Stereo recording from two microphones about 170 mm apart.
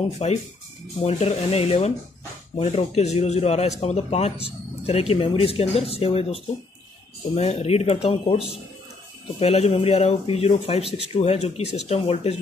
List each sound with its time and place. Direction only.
0.2 s speech: 40° left (ahead or behind)
9.4 s speech: 40° left (ahead or behind)